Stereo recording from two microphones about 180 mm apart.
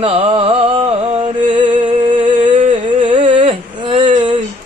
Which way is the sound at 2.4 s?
25° right (ahead or behind).